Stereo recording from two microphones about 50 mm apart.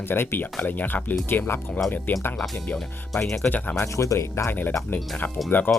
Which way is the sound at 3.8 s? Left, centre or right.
Left.